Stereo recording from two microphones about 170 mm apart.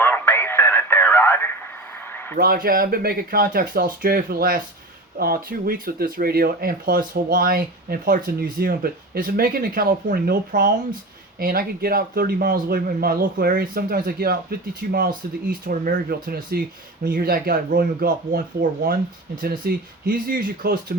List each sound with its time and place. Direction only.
0.0 s radio: 10° left (ahead or behind)
2.3 s speech: 60° right (ahead or behind)
19.4 s speech: 65° right (ahead or behind)